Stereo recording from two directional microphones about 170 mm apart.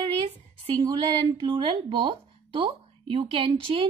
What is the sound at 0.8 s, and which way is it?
A woman's voice, 25° right (ahead or behind).